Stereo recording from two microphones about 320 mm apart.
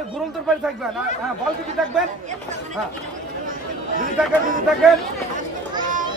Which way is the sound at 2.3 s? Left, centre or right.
Right.